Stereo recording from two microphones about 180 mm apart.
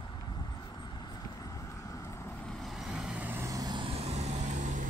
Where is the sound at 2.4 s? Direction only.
Centre (ahead or behind).